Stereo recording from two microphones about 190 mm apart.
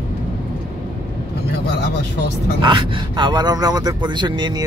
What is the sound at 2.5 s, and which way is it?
Speech, 25° right (ahead or behind).